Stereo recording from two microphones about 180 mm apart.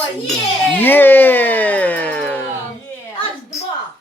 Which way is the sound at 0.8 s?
10° left (ahead or behind).